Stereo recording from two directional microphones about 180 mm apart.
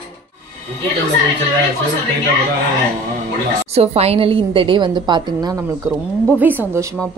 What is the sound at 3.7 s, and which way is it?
A woman's voice, 35° right (ahead or behind).